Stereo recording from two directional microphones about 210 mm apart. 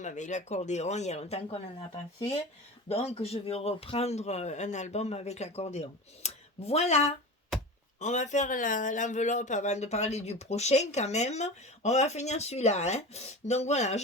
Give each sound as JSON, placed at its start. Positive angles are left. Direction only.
{"t": 0.0, "sound": "speech", "side_deg": 35}
{"t": 2.9, "sound": "speech", "side_deg": 30}